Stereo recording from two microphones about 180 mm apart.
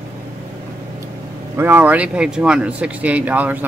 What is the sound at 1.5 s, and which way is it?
Speech, 10° right (ahead or behind).